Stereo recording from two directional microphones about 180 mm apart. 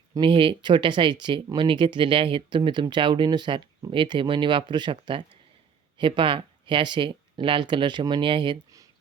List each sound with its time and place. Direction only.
0.1 s speech: 25° right (ahead or behind)